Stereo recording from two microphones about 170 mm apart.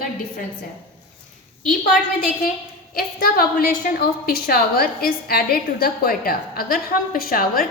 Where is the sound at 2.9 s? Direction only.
60° left (ahead or behind).